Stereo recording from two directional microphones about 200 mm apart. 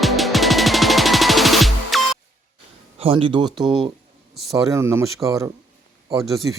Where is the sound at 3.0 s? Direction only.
25° right (ahead or behind).